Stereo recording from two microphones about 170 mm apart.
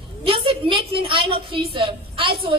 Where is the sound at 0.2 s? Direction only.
30° right (ahead or behind).